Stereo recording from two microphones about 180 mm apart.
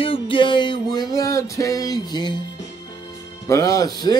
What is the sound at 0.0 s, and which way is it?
Music, 30° left (ahead or behind).